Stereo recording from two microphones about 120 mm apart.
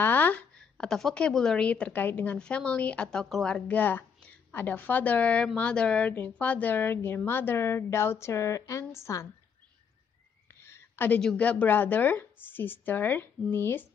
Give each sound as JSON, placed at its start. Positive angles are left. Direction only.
{"t": 0.0, "sound": "speech", "side_deg": 15}
{"t": 10.5, "sound": "a sound", "side_deg": 20}
{"t": 11.1, "sound": "speech", "side_deg": 10}